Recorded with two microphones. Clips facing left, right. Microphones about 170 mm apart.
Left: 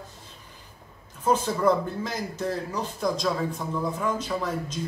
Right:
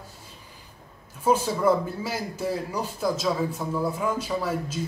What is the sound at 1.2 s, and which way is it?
A man's voice, 10° right (ahead or behind).